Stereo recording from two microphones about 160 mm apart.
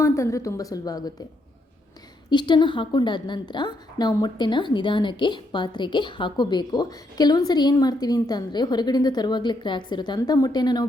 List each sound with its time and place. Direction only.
0.0 s a woman's voice: 20° left (ahead or behind)
2.3 s a woman's voice: 30° left (ahead or behind)